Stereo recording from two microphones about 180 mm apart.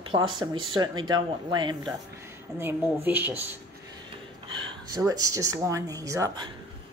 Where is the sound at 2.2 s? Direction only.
10° right (ahead or behind).